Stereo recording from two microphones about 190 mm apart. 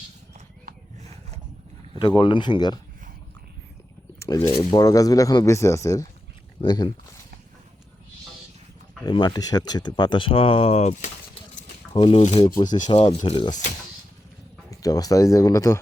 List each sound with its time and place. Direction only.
0.7 s a sound: 50° right (ahead or behind)
2.0 s speech: 25° left (ahead or behind)
4.2 s speech: 15° left (ahead or behind)
9.0 s speech: 20° left (ahead or behind)
11.9 s speech: 25° left (ahead or behind)
14.7 s speech: 20° left (ahead or behind)